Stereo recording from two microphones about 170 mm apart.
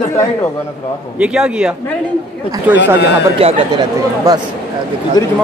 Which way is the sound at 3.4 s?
35° right (ahead or behind).